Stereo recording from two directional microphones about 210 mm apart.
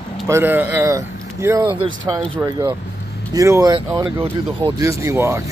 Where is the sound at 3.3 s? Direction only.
15° right (ahead or behind).